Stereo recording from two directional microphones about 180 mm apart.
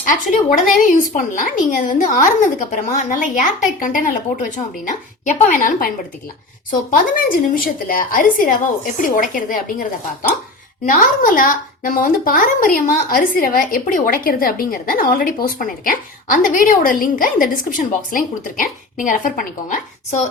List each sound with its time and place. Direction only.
0.0 s a woman's voice: 45° left (ahead or behind)
10.8 s a woman's voice: 50° left (ahead or behind)